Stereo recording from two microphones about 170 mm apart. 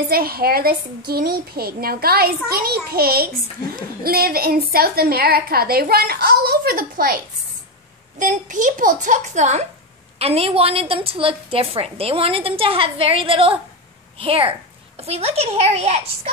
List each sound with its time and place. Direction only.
0.1 s a woman's voice: 60° right (ahead or behind)
8.2 s a woman's voice: 50° right (ahead or behind)